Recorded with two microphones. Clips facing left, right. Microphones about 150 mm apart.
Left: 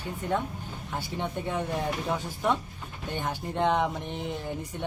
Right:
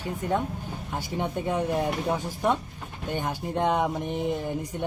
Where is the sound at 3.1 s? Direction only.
10° right (ahead or behind).